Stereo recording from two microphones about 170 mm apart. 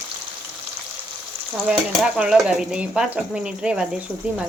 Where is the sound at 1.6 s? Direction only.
5° right (ahead or behind).